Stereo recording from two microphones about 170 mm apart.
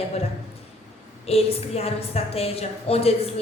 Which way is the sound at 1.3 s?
35° left (ahead or behind).